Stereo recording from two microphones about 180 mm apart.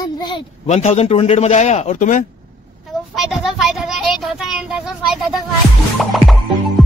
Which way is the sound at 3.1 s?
Centre (ahead or behind).